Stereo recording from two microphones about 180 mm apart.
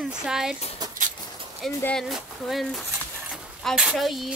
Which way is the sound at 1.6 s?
Centre (ahead or behind).